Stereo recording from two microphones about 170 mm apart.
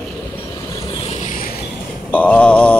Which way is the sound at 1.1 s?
45° left (ahead or behind).